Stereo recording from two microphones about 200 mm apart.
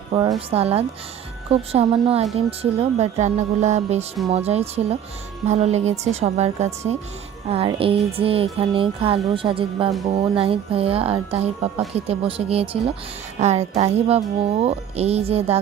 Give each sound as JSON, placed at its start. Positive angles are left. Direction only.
{"t": 0.1, "sound": "music", "side_deg": -25}
{"t": 2.5, "sound": "speech", "side_deg": -30}
{"t": 7.4, "sound": "music", "side_deg": -30}
{"t": 13.4, "sound": "speech", "side_deg": -35}